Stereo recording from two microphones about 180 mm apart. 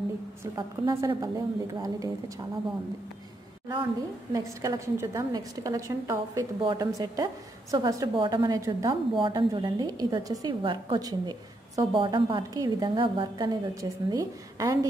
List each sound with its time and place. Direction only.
0.4 s a woman's voice: 25° right (ahead or behind)
4.3 s a woman's voice: 20° right (ahead or behind)